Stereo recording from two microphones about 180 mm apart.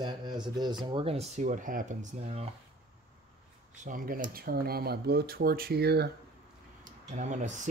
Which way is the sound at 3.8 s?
50° right (ahead or behind).